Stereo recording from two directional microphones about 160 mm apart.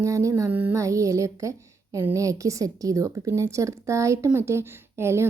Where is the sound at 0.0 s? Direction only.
20° right (ahead or behind).